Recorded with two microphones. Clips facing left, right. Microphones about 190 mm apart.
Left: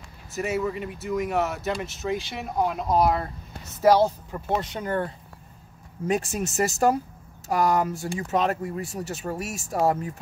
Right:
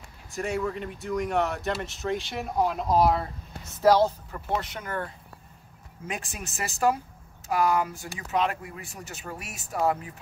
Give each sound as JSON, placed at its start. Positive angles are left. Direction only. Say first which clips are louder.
{"t": 0.3, "sound": "speech", "louder": "left 2 dB", "side_deg": 5}
{"t": 3.8, "sound": "speech", "louder": "left 2 dB", "side_deg": 15}
{"t": 4.7, "sound": "speech", "louder": "left 6 dB", "side_deg": 25}
{"t": 6.0, "sound": "speech", "louder": "left 11 dB", "side_deg": 40}